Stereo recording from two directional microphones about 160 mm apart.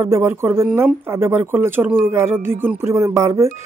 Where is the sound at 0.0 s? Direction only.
15° right (ahead or behind).